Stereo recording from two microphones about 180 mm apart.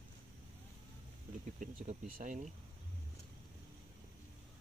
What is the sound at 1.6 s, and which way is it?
Speech, 45° right (ahead or behind).